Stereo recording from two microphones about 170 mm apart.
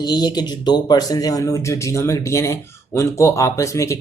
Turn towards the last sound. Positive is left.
turn(degrees=20)  # may be behind; listen again after turning